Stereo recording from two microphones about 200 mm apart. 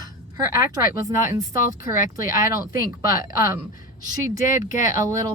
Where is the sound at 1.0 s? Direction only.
15° right (ahead or behind).